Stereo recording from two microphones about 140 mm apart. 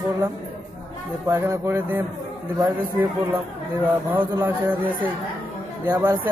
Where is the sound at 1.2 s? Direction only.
20° right (ahead or behind).